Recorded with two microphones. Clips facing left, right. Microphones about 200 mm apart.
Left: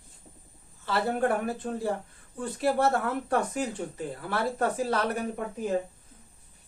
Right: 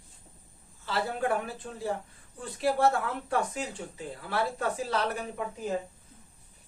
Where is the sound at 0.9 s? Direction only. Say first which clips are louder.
Left 3 dB; 55° left (ahead or behind).